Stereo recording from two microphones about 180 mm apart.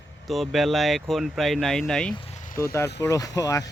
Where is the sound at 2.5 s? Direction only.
15° left (ahead or behind).